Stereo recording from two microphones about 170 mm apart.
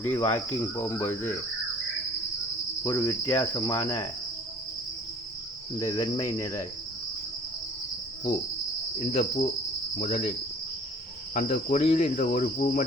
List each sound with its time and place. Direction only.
0.0 s cricket: 10° left (ahead or behind)
2.8 s cricket: 15° left (ahead or behind)
5.8 s cricket: 20° left (ahead or behind)
9.0 s cricket: 40° left (ahead or behind)
11.3 s cricket: 45° left (ahead or behind)